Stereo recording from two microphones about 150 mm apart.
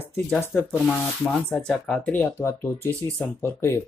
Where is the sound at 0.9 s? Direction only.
Centre (ahead or behind).